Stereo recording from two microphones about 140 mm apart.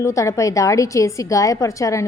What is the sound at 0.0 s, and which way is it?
A woman's voice, 20° left (ahead or behind).